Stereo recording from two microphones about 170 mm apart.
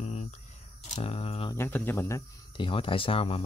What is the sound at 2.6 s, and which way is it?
Speech, 30° left (ahead or behind).